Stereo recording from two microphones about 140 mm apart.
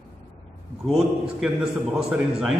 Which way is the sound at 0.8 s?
5° right (ahead or behind).